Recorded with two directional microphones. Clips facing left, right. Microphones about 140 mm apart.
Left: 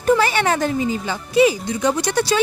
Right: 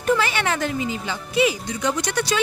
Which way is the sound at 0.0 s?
40° left (ahead or behind).